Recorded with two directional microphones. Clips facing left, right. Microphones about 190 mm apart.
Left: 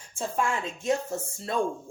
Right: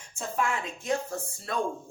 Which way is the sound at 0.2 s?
25° left (ahead or behind).